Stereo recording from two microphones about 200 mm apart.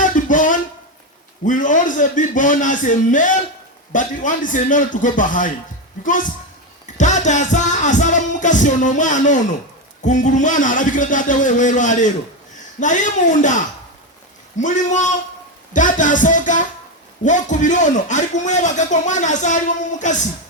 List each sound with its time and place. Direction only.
0.1 s a sound: 40° left (ahead or behind)
1.5 s a man's voice: 40° left (ahead or behind)
14.6 s a man's voice: 35° left (ahead or behind)